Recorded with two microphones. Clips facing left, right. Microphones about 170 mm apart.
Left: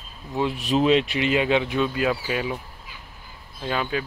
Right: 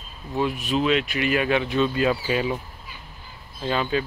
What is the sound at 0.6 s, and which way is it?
Speech, 35° left (ahead or behind).